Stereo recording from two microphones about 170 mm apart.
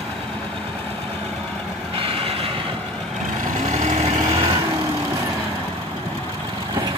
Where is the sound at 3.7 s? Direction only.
45° right (ahead or behind).